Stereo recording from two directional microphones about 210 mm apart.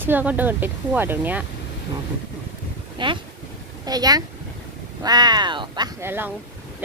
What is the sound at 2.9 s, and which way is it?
Speech, 25° right (ahead or behind).